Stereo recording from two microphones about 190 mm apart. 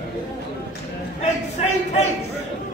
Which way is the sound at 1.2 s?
35° left (ahead or behind).